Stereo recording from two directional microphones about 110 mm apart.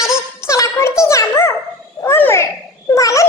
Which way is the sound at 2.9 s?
30° left (ahead or behind).